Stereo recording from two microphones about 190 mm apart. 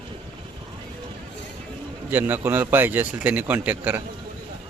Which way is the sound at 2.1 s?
10° right (ahead or behind).